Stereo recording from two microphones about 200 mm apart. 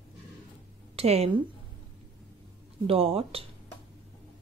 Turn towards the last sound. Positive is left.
turn(degrees=-30)  # may be behind; listen again after turning